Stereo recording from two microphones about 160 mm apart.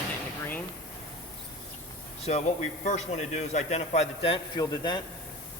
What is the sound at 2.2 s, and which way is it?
A man's voice, 45° left (ahead or behind).